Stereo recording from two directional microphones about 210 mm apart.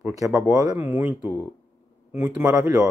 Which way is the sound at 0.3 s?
5° right (ahead or behind).